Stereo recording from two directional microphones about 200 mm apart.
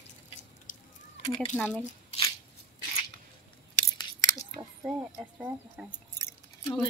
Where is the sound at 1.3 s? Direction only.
30° left (ahead or behind).